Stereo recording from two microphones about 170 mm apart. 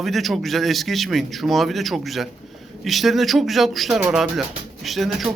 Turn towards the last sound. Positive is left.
turn(degrees=0)  # may be behind; listen again after turning